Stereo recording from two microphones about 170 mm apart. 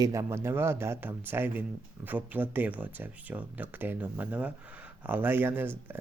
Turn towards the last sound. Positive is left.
turn(degrees=-10)  # may be behind; listen again after turning